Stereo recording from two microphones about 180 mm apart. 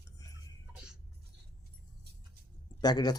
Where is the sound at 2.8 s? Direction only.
20° left (ahead or behind).